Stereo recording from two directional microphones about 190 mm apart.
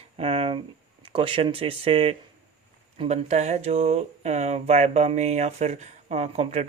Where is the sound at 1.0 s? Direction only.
25° right (ahead or behind).